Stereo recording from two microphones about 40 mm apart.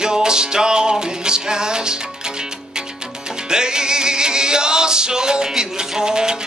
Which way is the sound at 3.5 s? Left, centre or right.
Centre.